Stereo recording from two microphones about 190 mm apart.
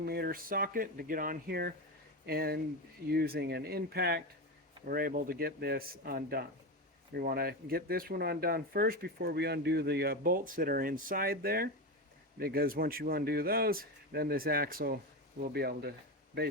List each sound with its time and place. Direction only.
0.0 s speech: 55° right (ahead or behind)